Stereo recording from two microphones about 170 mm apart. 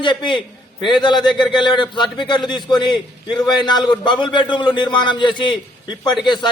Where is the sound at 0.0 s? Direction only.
30° left (ahead or behind).